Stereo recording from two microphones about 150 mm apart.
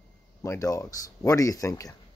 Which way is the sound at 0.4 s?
20° left (ahead or behind).